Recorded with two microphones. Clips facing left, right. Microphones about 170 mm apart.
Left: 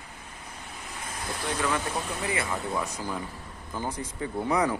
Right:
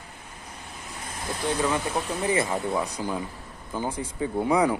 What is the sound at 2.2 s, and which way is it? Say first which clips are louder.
Speech: right 7 dB; 20° right (ahead or behind).